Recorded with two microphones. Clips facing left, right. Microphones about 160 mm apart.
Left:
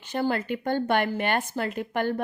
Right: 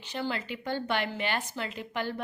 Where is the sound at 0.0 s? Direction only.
50° left (ahead or behind).